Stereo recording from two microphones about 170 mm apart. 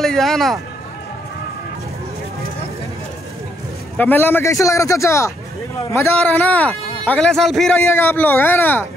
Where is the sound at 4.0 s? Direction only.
10° left (ahead or behind).